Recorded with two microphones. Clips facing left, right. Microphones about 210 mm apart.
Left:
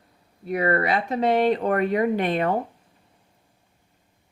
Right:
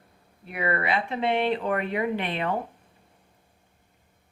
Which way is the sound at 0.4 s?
40° left (ahead or behind).